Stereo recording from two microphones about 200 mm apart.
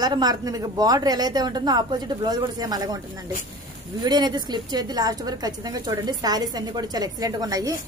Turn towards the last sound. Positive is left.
turn(degrees=-20)  # may be behind; listen again after turning